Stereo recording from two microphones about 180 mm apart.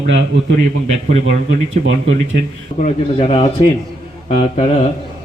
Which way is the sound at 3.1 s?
30° left (ahead or behind).